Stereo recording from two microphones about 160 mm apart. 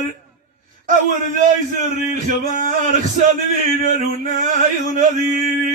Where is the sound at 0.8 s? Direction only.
55° right (ahead or behind).